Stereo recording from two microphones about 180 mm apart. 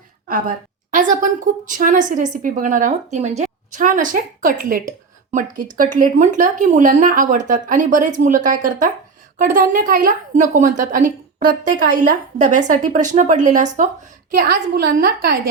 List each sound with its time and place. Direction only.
0.3 s a sound: 50° right (ahead or behind)
1.1 s a woman's voice: 45° right (ahead or behind)
14.3 s a woman's voice: 55° right (ahead or behind)